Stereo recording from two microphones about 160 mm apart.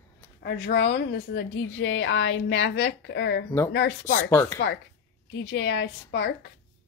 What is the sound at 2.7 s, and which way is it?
Speech, 90° left.